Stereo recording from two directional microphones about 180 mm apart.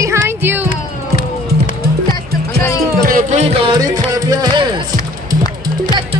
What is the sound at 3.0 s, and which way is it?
Speech, 50° right (ahead or behind).